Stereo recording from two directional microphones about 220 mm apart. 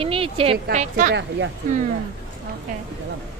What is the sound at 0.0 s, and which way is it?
Speech, 25° right (ahead or behind).